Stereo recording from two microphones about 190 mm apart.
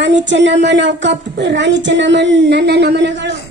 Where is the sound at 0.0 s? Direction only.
70° right (ahead or behind).